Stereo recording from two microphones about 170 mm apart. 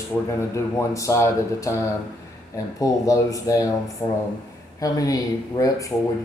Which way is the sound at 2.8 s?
20° left (ahead or behind).